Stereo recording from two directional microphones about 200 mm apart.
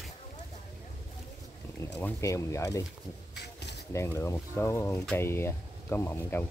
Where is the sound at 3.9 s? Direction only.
15° left (ahead or behind).